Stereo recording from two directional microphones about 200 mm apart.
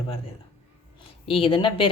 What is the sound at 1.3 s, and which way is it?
Speech, 25° left (ahead or behind).